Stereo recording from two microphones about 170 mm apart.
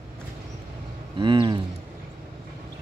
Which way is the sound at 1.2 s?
30° right (ahead or behind).